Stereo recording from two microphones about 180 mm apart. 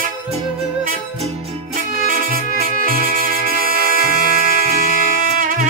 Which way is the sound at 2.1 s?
50° right (ahead or behind).